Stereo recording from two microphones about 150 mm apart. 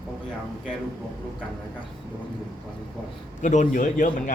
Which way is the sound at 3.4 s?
55° left (ahead or behind).